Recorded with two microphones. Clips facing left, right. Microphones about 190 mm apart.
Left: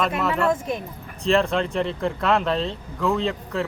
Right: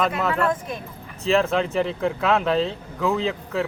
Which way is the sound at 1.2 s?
Centre (ahead or behind).